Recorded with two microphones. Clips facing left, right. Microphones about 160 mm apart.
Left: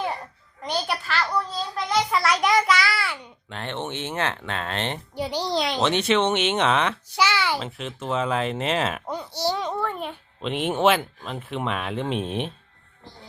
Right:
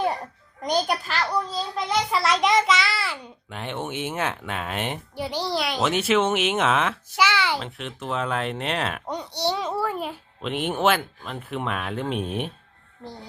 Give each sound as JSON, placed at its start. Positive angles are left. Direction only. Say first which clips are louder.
{"t": 0.9, "sound": "a child's voice", "louder": "right 1 dB", "side_deg": -40}
{"t": 1.3, "sound": "speech", "louder": "right 1 dB", "side_deg": -10}
{"t": 2.1, "sound": "a child's voice", "louder": "right 2 dB", "side_deg": -25}
{"t": 3.2, "sound": "speech", "louder": "even", "side_deg": -10}
{"t": 5.1, "sound": "a child's voice", "louder": "left 2 dB", "side_deg": 15}
{"t": 5.6, "sound": "a child's voice", "louder": "even", "side_deg": -5}
{"t": 7.2, "sound": "a child's voice", "louder": "even", "side_deg": 10}